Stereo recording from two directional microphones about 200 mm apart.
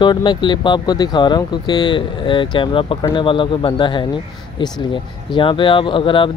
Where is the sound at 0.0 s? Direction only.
25° left (ahead or behind).